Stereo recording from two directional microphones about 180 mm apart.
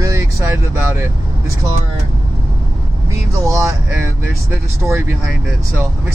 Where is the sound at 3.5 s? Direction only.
20° right (ahead or behind).